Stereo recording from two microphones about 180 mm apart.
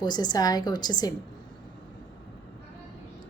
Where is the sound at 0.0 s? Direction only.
25° left (ahead or behind).